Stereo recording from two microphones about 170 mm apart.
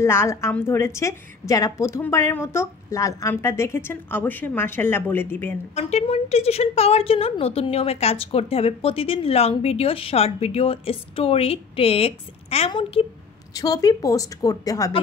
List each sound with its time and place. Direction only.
0.0 s a woman's voice: 15° left (ahead or behind)
5.8 s a woman's voice: 40° left (ahead or behind)
13.5 s a woman's voice: 20° left (ahead or behind)